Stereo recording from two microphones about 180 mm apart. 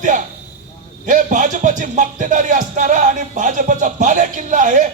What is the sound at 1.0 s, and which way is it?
Speech, 45° right (ahead or behind).